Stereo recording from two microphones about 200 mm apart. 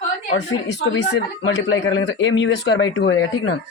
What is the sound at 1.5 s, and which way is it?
Speech, 70° left (ahead or behind).